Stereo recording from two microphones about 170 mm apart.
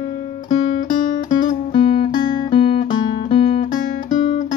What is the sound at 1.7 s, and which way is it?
Music, 30° left (ahead or behind).